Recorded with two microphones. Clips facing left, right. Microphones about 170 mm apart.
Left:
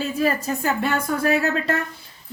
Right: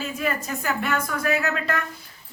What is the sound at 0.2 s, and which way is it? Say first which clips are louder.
A woman's voice: left 6 dB; 35° left (ahead or behind).